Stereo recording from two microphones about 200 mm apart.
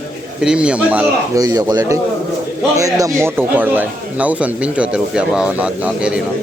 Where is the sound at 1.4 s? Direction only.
15° right (ahead or behind).